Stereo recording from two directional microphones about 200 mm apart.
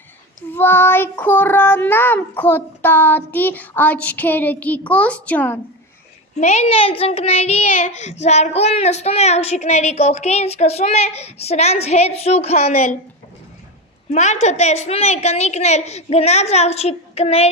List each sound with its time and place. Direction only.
0.5 s child singing: 10° left (ahead or behind)
6.3 s child singing: 35° left (ahead or behind)
14.1 s child singing: 35° left (ahead or behind)